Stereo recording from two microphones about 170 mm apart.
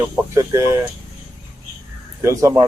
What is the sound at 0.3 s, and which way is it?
Speech, 15° right (ahead or behind).